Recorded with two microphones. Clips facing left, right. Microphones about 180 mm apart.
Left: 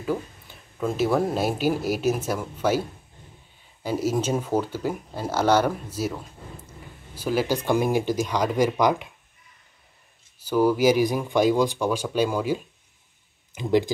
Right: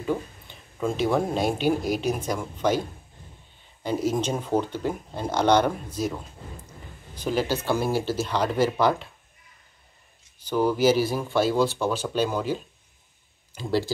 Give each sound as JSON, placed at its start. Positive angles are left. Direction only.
{"t": 0.0, "sound": "speech", "side_deg": 5}
{"t": 10.4, "sound": "speech", "side_deg": 10}